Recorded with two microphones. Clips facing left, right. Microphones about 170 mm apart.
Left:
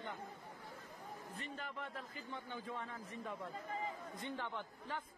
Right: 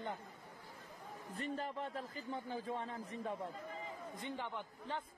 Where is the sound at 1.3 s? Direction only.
40° right (ahead or behind).